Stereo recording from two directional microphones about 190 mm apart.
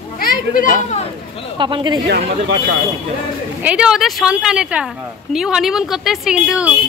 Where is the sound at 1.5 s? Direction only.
25° right (ahead or behind).